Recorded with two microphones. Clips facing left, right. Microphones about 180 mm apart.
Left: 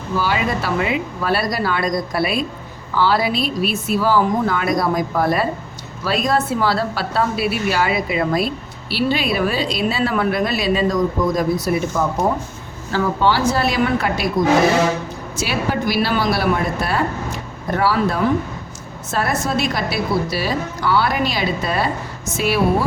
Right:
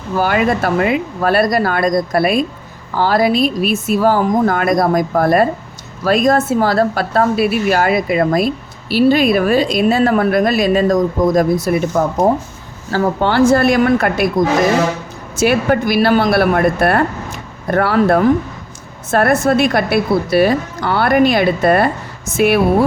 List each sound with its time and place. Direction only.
0.2 s a woman's voice: 55° right (ahead or behind)
15.4 s speech: 55° right (ahead or behind)